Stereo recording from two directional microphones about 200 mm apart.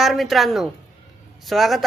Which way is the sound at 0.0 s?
Centre (ahead or behind).